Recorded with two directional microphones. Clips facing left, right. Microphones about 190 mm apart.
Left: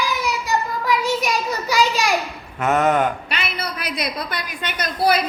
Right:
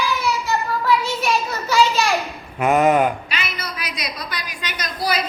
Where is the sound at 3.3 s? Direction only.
60° left (ahead or behind).